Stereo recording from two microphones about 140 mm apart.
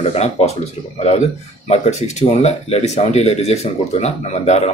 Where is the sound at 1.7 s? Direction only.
50° left (ahead or behind).